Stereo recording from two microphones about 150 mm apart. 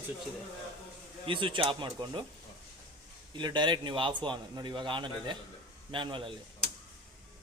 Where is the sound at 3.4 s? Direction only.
30° right (ahead or behind).